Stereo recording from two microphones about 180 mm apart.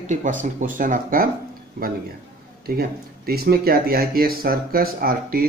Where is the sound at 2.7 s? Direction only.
60° right (ahead or behind).